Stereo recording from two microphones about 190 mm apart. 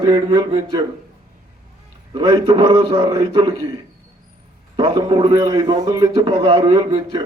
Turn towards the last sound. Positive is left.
turn(degrees=-25)  # may be behind; listen again after turning